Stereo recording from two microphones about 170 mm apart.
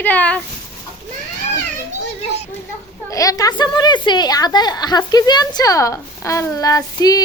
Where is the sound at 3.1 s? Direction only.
20° left (ahead or behind).